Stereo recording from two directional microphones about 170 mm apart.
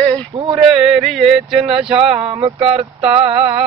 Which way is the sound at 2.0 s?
35° right (ahead or behind).